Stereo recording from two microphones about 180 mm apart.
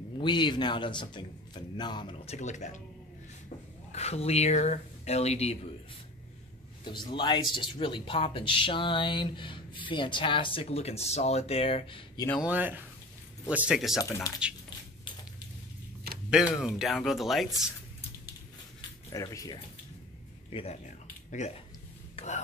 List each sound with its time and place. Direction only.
0.2 s speech: 25° left (ahead or behind)
6.8 s speech: 25° left (ahead or behind)
12.4 s speech: 10° right (ahead or behind)
13.9 s speech: 20° left (ahead or behind)
16.3 s speech: 5° right (ahead or behind)
18.8 s a sound: 20° left (ahead or behind)
20.4 s speech: 30° left (ahead or behind)
22.1 s a sound: 40° left (ahead or behind)